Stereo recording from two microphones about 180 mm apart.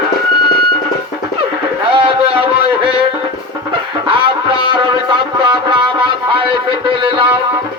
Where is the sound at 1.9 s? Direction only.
30° right (ahead or behind).